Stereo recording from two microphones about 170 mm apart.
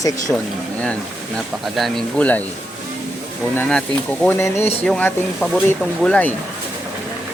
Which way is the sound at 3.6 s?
5° left (ahead or behind).